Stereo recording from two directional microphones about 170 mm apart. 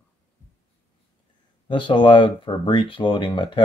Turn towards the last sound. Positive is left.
turn(degrees=30)  # may be behind; listen again after turning